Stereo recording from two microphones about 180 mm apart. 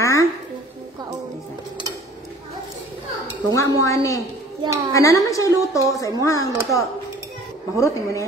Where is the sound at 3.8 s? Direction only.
15° left (ahead or behind).